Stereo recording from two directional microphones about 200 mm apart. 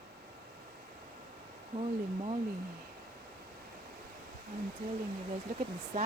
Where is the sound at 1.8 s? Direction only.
30° right (ahead or behind).